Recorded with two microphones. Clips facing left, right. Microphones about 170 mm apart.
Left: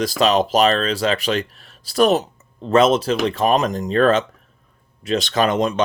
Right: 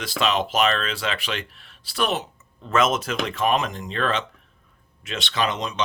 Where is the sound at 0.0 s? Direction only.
40° left (ahead or behind).